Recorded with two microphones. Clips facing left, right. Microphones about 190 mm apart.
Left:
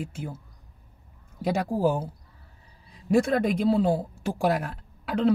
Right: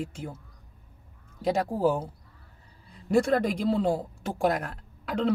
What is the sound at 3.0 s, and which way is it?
Speech, centre (ahead or behind).